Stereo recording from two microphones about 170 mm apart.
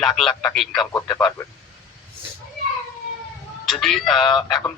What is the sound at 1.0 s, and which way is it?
Speech, 20° left (ahead or behind).